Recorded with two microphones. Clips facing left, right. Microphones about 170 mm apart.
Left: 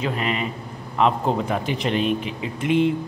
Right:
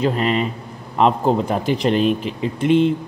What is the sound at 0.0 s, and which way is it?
A man's voice, 35° right (ahead or behind).